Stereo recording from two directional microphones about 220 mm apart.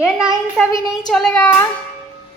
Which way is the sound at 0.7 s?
15° left (ahead or behind).